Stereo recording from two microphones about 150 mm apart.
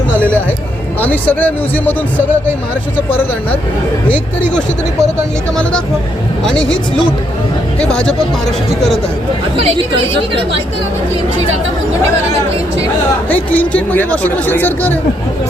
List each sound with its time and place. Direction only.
0.1 s a sound: 15° right (ahead or behind)
1.0 s speech: 10° left (ahead or behind)
6.4 s speech: 5° left (ahead or behind)
7.8 s speech: 5° left (ahead or behind)
9.6 s speech: 40° right (ahead or behind)
13.2 s speech: 10° left (ahead or behind)